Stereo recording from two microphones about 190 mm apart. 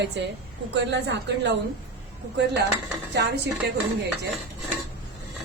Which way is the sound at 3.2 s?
60° right (ahead or behind).